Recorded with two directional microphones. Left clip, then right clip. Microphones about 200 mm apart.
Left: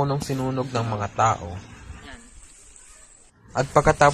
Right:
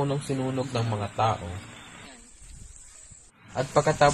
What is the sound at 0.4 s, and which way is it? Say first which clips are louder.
Speech: left 3 dB; 5° left (ahead or behind).